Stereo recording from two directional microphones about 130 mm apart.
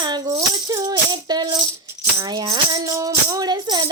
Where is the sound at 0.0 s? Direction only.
30° right (ahead or behind).